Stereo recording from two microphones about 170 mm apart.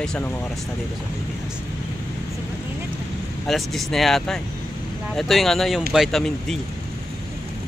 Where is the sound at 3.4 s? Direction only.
Centre (ahead or behind).